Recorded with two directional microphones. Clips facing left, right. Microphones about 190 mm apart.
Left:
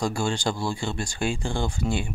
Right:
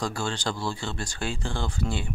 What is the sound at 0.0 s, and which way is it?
Speech, 10° left (ahead or behind).